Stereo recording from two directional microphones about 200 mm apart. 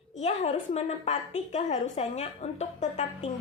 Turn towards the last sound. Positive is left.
turn(degrees=35)  # may be behind; listen again after turning